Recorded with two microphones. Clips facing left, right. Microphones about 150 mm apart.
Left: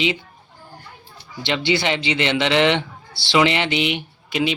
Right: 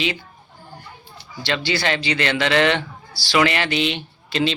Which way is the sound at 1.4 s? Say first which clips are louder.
Left 2 dB; 20° left (ahead or behind).